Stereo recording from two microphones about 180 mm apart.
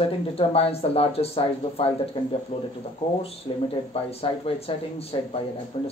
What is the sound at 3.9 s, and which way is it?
Speech, 35° left (ahead or behind).